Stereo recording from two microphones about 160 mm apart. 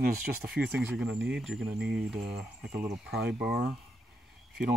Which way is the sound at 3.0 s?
90° right.